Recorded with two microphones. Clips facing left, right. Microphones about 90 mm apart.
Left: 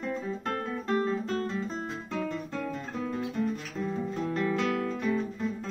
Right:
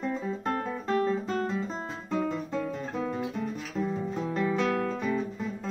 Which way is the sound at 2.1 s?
5° right (ahead or behind).